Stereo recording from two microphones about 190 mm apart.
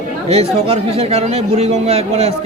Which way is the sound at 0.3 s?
30° right (ahead or behind).